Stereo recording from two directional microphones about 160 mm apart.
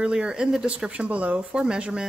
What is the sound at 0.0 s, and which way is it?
Speech, 5° right (ahead or behind).